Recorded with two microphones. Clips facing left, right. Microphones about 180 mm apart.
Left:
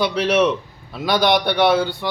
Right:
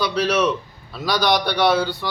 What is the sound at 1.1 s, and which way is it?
Speech, 55° left (ahead or behind).